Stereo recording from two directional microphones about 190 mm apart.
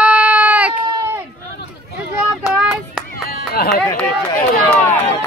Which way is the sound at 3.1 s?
50° left (ahead or behind).